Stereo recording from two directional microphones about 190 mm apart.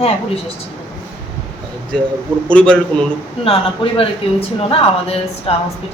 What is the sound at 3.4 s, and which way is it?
A man's voice, 30° left (ahead or behind).